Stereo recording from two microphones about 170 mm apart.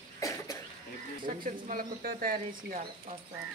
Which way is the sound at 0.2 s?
20° left (ahead or behind).